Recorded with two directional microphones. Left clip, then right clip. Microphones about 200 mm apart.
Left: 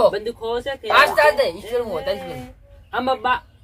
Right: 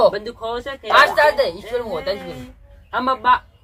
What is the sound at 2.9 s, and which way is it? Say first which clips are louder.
Speech: right 4 dB; 5° right (ahead or behind).